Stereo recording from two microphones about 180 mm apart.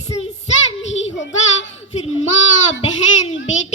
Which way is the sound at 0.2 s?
35° left (ahead or behind).